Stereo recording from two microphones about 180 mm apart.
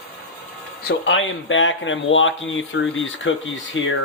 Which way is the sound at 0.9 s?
90° left.